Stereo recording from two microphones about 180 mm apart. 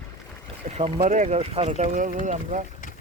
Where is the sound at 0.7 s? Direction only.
35° right (ahead or behind).